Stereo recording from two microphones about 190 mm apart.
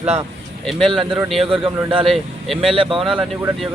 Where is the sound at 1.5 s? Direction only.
30° right (ahead or behind).